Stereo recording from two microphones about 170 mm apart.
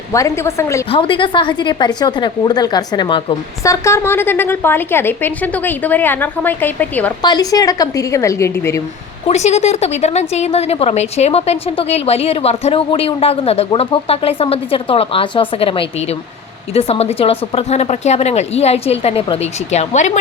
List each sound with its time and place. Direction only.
0.1 s a woman's voice: 15° left (ahead or behind)
0.9 s a woman's voice: 30° left (ahead or behind); by 7.1 s 10° left (ahead or behind)
7.2 s speech: 25° left (ahead or behind)
9.2 s a woman's voice: 40° left (ahead or behind)